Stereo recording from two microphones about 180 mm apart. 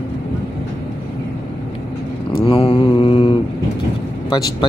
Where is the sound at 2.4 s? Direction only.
30° left (ahead or behind).